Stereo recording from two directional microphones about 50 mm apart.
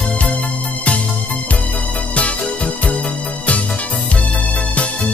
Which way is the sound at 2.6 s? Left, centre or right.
Left.